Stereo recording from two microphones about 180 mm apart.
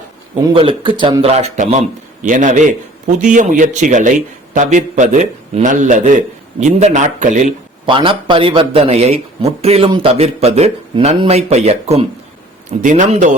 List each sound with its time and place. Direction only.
0.5 s a man's voice: 30° right (ahead or behind)
7.9 s a man's voice: 30° right (ahead or behind)